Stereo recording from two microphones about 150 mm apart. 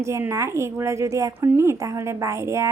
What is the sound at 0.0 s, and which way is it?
A woman's voice, 20° right (ahead or behind).